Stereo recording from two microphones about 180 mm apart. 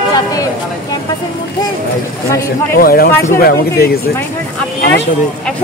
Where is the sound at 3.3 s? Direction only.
55° left (ahead or behind).